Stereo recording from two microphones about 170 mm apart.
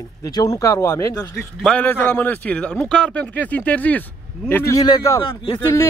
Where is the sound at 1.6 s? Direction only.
5° left (ahead or behind).